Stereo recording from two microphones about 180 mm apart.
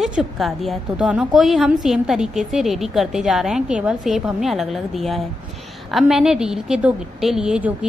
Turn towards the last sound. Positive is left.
turn(degrees=-5)  # may be behind; listen again after turning